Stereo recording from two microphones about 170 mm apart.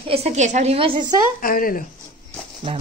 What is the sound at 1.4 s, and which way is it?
Speech, 55° left (ahead or behind).